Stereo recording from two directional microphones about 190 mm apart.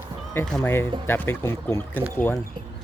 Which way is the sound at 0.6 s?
10° left (ahead or behind).